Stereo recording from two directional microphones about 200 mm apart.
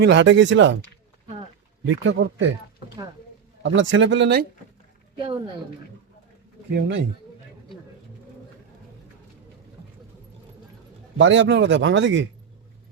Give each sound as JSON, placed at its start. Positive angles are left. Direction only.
{"t": 0.0, "sound": "speech", "side_deg": -60}
{"t": 2.0, "sound": "speech", "side_deg": -65}
{"t": 3.6, "sound": "speech", "side_deg": -70}
{"t": 6.7, "sound": "speech", "side_deg": -65}
{"t": 11.2, "sound": "speech", "side_deg": -70}